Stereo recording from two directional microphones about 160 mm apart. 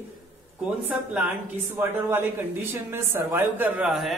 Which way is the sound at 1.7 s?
15° right (ahead or behind).